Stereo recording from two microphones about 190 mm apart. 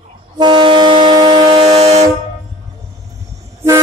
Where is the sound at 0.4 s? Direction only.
25° right (ahead or behind).